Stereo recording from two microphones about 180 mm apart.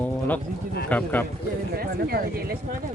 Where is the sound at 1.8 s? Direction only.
55° right (ahead or behind).